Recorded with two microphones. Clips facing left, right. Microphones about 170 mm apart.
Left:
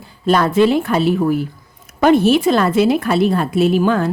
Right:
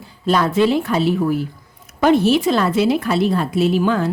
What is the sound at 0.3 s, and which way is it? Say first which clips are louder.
Speech: left 3 dB; 55° left (ahead or behind).